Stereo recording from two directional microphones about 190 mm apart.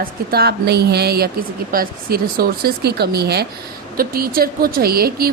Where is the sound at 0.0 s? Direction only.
55° right (ahead or behind).